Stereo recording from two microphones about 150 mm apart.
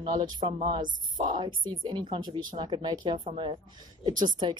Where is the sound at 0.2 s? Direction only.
30° right (ahead or behind).